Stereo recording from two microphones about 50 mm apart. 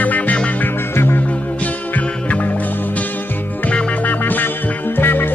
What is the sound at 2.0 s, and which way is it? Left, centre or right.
Music, left.